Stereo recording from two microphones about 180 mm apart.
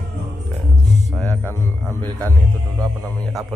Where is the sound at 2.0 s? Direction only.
20° right (ahead or behind).